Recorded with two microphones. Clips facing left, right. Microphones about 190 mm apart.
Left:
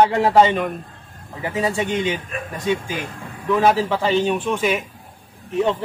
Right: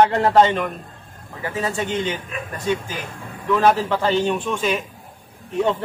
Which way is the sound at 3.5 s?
10° left (ahead or behind).